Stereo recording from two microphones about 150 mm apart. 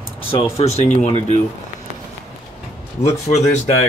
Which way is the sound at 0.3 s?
40° left (ahead or behind).